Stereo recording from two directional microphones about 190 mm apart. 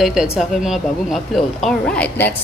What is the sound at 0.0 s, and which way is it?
Speech, centre (ahead or behind).